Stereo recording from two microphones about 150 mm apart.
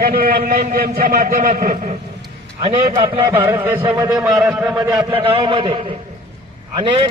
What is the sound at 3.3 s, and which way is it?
Speech, 15° right (ahead or behind).